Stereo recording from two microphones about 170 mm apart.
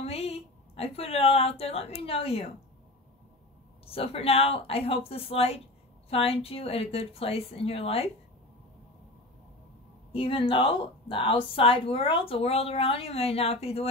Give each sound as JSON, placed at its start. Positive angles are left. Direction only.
{"t": 0.0, "sound": "speech", "side_deg": 35}
{"t": 3.8, "sound": "speech", "side_deg": 35}
{"t": 10.1, "sound": "speech", "side_deg": 30}